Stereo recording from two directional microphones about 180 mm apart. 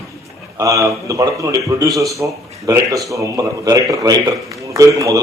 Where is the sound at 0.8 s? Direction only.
15° right (ahead or behind).